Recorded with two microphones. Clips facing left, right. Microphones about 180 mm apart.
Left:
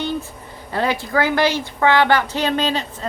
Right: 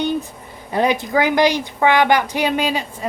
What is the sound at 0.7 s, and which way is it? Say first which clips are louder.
A woman's voice: right 3 dB; 15° right (ahead or behind).